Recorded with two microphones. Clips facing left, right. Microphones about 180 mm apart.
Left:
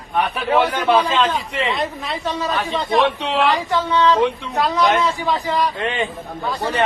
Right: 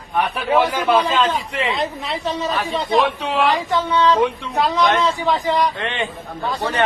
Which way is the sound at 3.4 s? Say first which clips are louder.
Right 1 dB; 20° right (ahead or behind).